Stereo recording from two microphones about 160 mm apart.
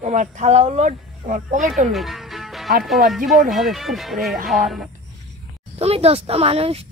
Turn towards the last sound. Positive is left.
turn(degrees=-40)  # may be behind; listen again after turning